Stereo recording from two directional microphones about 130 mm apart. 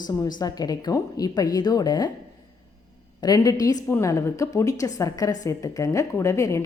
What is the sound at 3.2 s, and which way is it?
Speech, 30° left (ahead or behind).